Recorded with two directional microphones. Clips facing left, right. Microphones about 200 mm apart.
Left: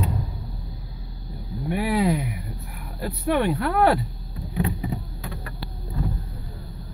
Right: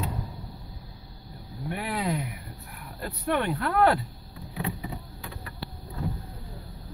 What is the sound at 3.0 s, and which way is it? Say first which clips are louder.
Speech: left 5 dB; 5° left (ahead or behind).